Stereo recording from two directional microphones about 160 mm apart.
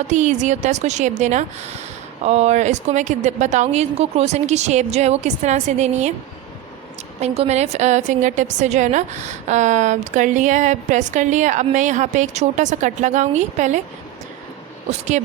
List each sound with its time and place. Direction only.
0.1 s a woman's voice: 50° right (ahead or behind)
7.2 s a woman's voice: 45° right (ahead or behind)
14.8 s a woman's voice: 50° right (ahead or behind)